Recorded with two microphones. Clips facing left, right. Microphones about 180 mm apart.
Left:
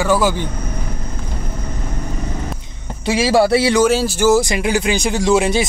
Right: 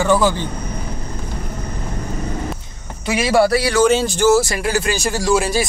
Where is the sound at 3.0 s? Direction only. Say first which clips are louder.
Left 1 dB; 25° left (ahead or behind).